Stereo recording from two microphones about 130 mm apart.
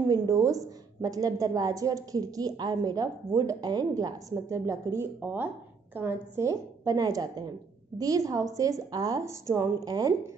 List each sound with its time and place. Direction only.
0.1 s a woman's voice: 25° right (ahead or behind)